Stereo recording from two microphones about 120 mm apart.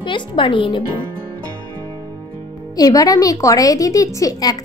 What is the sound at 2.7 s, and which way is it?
Speech, 30° left (ahead or behind).